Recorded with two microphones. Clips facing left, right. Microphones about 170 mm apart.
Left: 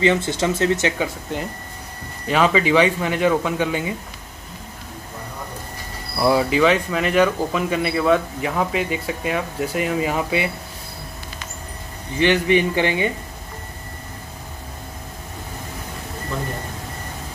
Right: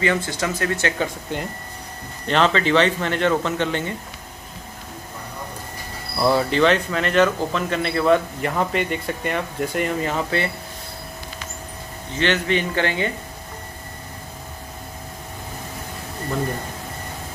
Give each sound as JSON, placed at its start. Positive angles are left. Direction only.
{"t": 0.0, "sound": "speech", "side_deg": 25}
{"t": 1.0, "sound": "speech", "side_deg": 0}
{"t": 6.1, "sound": "speech", "side_deg": 5}
{"t": 12.2, "sound": "speech", "side_deg": 15}